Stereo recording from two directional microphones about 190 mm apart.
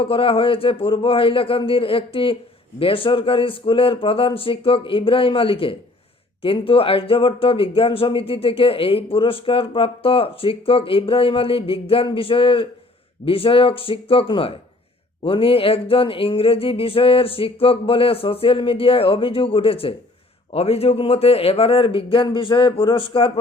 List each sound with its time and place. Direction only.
0.0 s speech: 30° left (ahead or behind)